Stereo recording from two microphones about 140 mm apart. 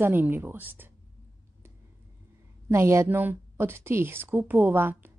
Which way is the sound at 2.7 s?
20° right (ahead or behind).